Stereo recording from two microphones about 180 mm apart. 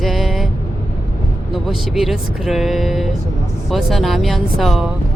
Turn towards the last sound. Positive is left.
turn(degrees=0)  # may be behind; listen again after turning